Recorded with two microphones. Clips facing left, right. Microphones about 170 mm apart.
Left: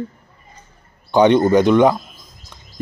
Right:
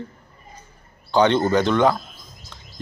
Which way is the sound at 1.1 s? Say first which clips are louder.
Left 5 dB; 15° left (ahead or behind).